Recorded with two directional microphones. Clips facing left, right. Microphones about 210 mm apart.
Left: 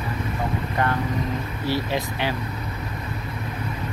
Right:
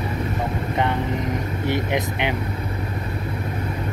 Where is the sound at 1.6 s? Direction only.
20° right (ahead or behind).